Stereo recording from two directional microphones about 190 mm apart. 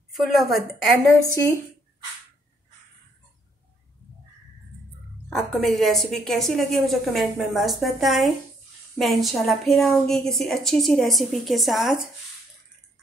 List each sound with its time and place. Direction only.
0.1 s a woman's voice: centre (ahead or behind)
5.3 s a woman's voice: centre (ahead or behind)